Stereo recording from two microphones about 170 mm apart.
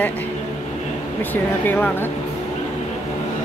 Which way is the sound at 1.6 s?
10° left (ahead or behind).